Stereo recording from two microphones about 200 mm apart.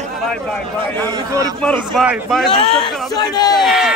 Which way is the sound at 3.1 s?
20° left (ahead or behind).